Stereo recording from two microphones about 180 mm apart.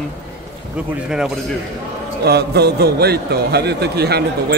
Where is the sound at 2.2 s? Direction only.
65° right (ahead or behind).